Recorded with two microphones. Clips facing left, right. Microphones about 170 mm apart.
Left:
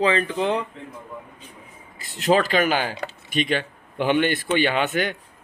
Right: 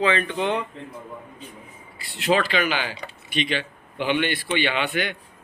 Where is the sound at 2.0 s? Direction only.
45° left (ahead or behind).